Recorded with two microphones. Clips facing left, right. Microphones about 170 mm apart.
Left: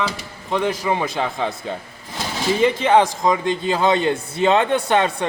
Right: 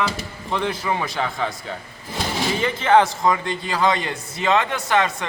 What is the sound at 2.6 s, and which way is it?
A man's voice, 15° left (ahead or behind).